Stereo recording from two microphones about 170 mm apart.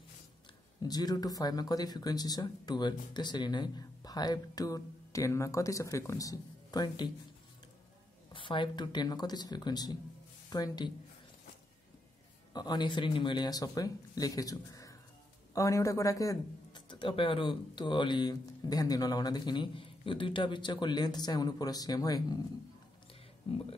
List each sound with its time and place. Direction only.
0.8 s a man's voice: 20° left (ahead or behind)
8.3 s a man's voice: 30° left (ahead or behind)
12.5 s a man's voice: 25° left (ahead or behind)